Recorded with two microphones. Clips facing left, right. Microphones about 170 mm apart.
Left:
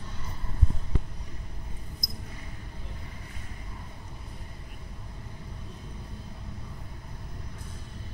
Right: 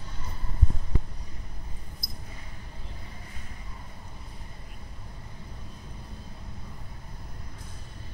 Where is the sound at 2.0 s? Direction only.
20° left (ahead or behind).